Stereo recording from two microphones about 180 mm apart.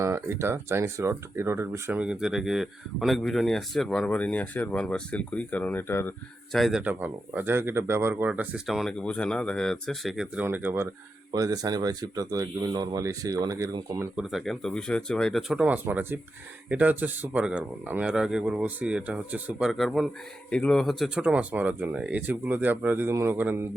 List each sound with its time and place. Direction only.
0.0 s speech: 15° right (ahead or behind); by 6.1 s 15° left (ahead or behind)
6.5 s speech: centre (ahead or behind); by 14.1 s 20° right (ahead or behind)
14.2 s speech: centre (ahead or behind)